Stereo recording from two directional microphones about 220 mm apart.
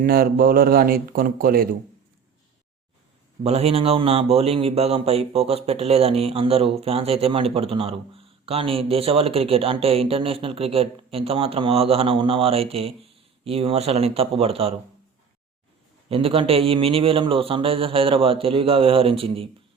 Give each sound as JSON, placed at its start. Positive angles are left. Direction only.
{"t": 0.0, "sound": "speech", "side_deg": -40}
{"t": 3.4, "sound": "speech", "side_deg": -30}
{"t": 16.0, "sound": "speech", "side_deg": -25}